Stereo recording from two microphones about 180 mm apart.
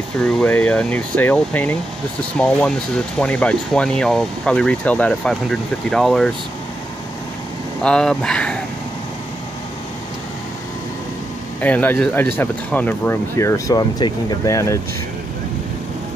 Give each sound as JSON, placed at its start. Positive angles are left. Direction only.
{"t": 0.2, "sound": "speech", "side_deg": 5}
{"t": 7.8, "sound": "speech", "side_deg": 5}
{"t": 11.6, "sound": "speech", "side_deg": 10}